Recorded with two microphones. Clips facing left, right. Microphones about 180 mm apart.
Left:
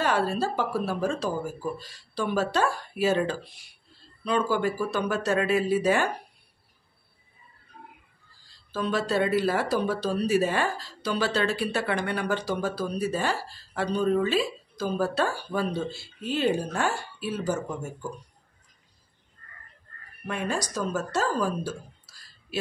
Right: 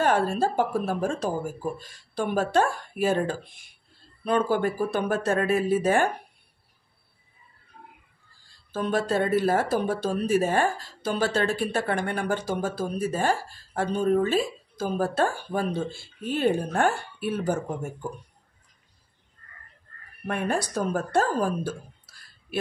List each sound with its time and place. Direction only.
0.0 s speech: 50° right (ahead or behind)
8.7 s speech: 50° right (ahead or behind)
20.2 s speech: 55° right (ahead or behind)